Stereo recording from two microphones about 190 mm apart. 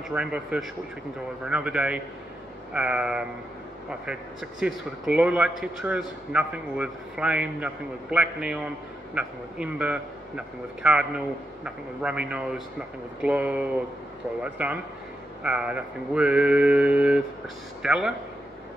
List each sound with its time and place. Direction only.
0.1 s a man's voice: 5° right (ahead or behind)
13.2 s a sound: 5° right (ahead or behind)
17.8 s a man's voice: 5° right (ahead or behind)